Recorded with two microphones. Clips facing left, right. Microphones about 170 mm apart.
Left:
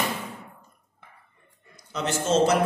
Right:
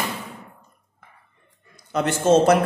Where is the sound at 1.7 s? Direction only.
55° right (ahead or behind).